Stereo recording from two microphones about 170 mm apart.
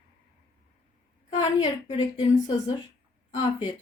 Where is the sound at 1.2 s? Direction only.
30° left (ahead or behind).